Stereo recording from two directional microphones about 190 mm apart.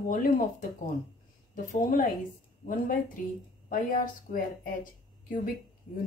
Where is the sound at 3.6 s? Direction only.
45° left (ahead or behind).